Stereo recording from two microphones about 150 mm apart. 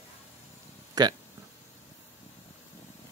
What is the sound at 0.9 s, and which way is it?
Speech, 30° right (ahead or behind).